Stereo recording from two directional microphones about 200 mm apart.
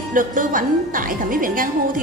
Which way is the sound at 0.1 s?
40° right (ahead or behind).